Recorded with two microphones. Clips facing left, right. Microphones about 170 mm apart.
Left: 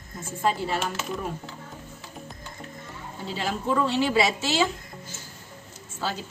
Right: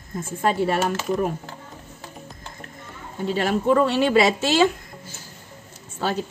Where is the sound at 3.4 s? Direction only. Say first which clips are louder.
Right 6 dB; 60° right (ahead or behind).